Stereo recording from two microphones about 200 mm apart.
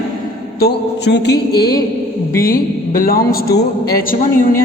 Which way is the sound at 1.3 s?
20° left (ahead or behind).